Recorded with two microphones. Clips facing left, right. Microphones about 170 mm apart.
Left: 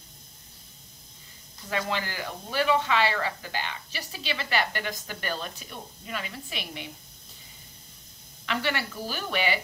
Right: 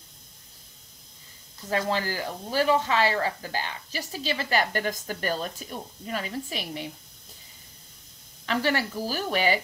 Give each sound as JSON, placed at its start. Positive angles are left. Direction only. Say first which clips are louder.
{"t": 1.7, "sound": "speech", "louder": "right 4 dB", "side_deg": -40}
{"t": 8.5, "sound": "speech", "louder": "right 4 dB", "side_deg": -40}